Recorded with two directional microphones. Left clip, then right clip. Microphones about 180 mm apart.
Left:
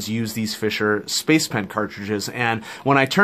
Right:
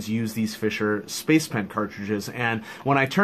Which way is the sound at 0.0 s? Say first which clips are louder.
Left 2 dB; 40° left (ahead or behind).